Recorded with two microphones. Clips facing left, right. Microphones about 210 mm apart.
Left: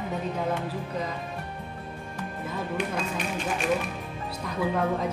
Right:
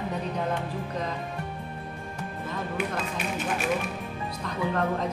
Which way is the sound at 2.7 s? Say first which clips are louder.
Left 1 dB; 5° right (ahead or behind).